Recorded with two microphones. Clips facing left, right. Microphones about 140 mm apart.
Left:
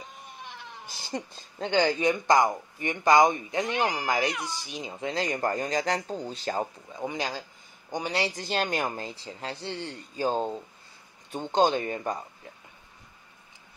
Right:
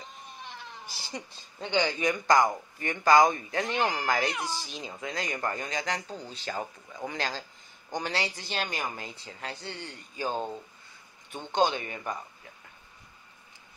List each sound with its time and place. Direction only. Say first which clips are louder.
1.6 s speech: left 4 dB; 30° left (ahead or behind)
6.9 s a man's voice: left 2 dB; 20° left (ahead or behind)
8.3 s speech: left 6 dB; 40° left (ahead or behind)